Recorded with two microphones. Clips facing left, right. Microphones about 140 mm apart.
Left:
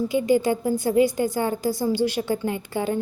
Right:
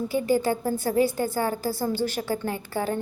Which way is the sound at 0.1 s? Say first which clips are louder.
Left 2 dB; 15° left (ahead or behind).